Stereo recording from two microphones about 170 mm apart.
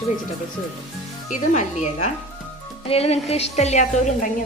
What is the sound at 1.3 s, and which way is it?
A woman's voice, 45° left (ahead or behind).